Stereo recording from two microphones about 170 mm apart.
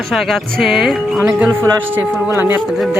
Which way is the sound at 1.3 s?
15° right (ahead or behind).